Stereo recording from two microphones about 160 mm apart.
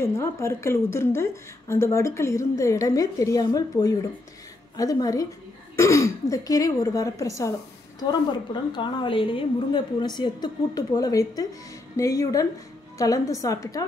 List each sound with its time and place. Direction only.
0.0 s a woman's voice: 15° left (ahead or behind)